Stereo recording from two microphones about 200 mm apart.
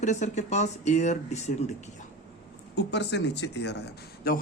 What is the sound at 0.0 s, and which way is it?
A man's voice, 35° left (ahead or behind).